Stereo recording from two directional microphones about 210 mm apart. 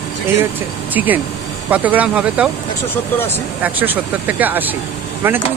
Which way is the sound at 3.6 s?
10° right (ahead or behind).